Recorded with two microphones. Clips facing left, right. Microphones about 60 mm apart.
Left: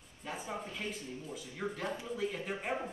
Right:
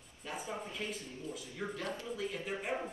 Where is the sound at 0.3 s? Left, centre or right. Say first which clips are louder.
Left 1 dB; centre.